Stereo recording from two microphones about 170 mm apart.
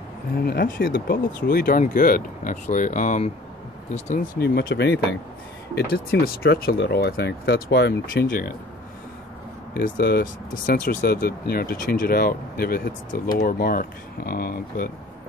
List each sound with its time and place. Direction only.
0.5 s speech: 60° left (ahead or behind)
4.4 s speech: 70° left (ahead or behind); by 5.0 s 85° left
5.8 s speech: 60° left (ahead or behind)
9.8 s speech: 60° left (ahead or behind)